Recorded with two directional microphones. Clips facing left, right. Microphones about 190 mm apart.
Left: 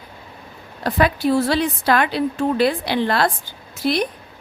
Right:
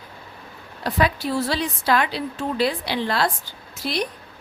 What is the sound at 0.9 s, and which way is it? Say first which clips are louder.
A woman's voice: left 5 dB; 55° left (ahead or behind).